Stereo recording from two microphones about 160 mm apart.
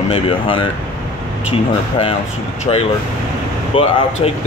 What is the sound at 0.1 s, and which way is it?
Speech, 35° left (ahead or behind).